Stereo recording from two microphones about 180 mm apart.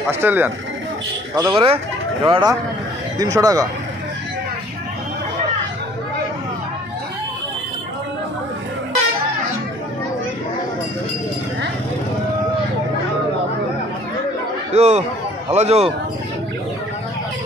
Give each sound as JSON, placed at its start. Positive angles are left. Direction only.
{"t": 0.1, "sound": "speech", "side_deg": -10}
{"t": 1.3, "sound": "speech", "side_deg": -25}
{"t": 14.7, "sound": "speech", "side_deg": -40}